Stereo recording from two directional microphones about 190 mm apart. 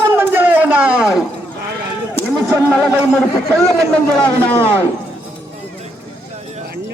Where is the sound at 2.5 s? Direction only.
5° right (ahead or behind).